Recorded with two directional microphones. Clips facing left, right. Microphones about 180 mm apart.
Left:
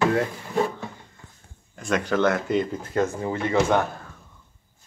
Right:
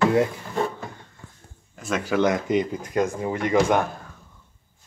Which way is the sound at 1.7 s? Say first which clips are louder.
Left 1 dB; 5° right (ahead or behind).